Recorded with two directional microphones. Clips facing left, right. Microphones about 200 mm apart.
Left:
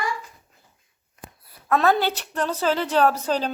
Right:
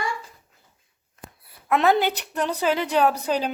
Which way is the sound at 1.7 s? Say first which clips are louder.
Even; 15° right (ahead or behind).